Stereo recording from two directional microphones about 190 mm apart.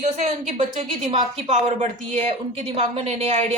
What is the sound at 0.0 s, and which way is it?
A woman's voice, 35° right (ahead or behind).